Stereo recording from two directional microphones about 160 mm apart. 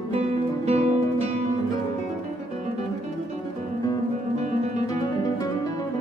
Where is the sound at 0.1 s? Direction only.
40° right (ahead or behind).